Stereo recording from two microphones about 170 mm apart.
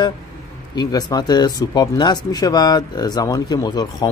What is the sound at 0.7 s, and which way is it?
Speech, 25° left (ahead or behind).